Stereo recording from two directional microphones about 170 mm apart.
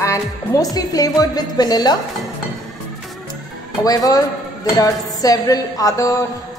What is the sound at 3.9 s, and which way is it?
Music, 20° left (ahead or behind).